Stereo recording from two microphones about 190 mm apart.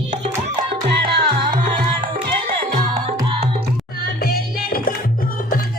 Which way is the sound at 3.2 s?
30° right (ahead or behind).